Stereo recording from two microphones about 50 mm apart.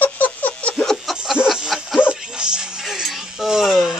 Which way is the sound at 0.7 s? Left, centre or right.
Centre.